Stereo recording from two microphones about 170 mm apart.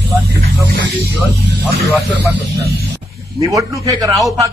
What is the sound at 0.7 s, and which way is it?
Speech, 65° right (ahead or behind).